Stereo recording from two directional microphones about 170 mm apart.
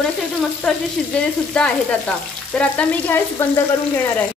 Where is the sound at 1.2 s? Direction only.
5° left (ahead or behind).